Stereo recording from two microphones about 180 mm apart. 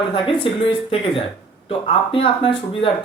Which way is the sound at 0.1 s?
30° left (ahead or behind).